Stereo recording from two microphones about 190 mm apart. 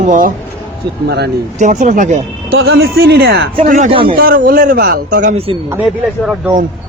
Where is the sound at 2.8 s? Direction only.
60° right (ahead or behind).